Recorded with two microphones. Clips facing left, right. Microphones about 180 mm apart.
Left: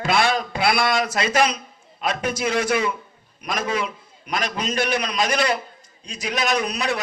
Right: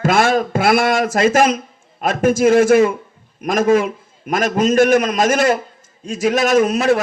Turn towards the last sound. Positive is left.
turn(degrees=-45)  # may be behind; listen again after turning